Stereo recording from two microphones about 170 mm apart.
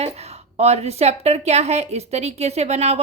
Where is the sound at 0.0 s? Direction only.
40° right (ahead or behind).